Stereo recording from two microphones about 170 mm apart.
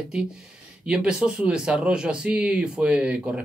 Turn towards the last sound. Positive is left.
turn(degrees=-5)  # may be behind; listen again after turning